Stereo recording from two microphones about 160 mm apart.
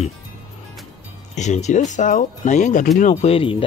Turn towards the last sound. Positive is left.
turn(degrees=35)  # may be behind; listen again after turning